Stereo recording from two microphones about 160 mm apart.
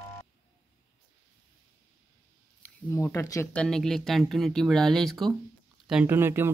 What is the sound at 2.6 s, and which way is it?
Speech, 15° left (ahead or behind).